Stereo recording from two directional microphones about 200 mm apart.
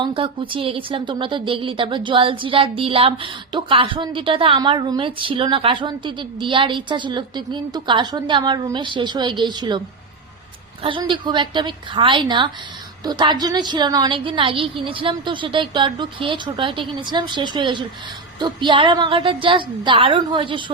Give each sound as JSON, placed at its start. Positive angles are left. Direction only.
{"t": 0.0, "sound": "a woman's voice", "side_deg": -25}
{"t": 10.8, "sound": "a woman's voice", "side_deg": -25}